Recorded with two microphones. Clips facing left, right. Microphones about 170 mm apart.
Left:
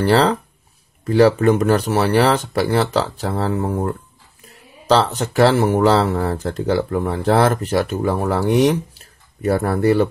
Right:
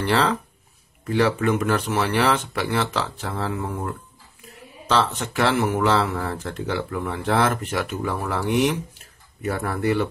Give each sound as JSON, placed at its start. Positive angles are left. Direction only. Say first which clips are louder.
{"t": 0.0, "sound": "speech", "louder": "left 6 dB", "side_deg": 35}